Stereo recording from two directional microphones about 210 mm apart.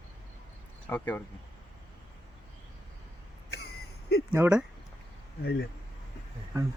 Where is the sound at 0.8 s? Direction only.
10° left (ahead or behind).